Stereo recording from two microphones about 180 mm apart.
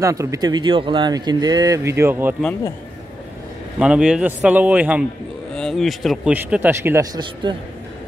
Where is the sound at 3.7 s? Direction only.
5° right (ahead or behind).